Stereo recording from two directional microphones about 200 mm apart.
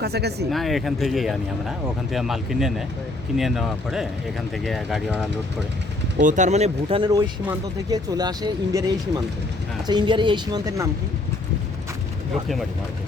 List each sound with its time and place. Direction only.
0.0 s speech: 55° right (ahead or behind)
0.5 s speech: centre (ahead or behind)
6.2 s speech: 35° right (ahead or behind); by 8.8 s 20° right (ahead or behind)
9.8 s speech: 25° right (ahead or behind)